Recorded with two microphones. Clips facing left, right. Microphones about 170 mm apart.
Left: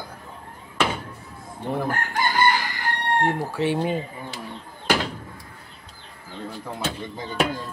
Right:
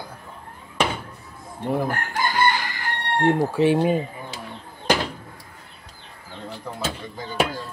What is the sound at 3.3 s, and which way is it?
Speech, 15° right (ahead or behind).